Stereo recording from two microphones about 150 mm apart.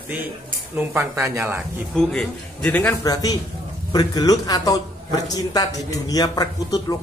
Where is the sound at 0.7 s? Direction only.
15° right (ahead or behind).